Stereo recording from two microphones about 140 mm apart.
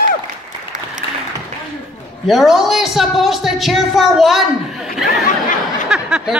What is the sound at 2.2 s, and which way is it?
Speech, centre (ahead or behind).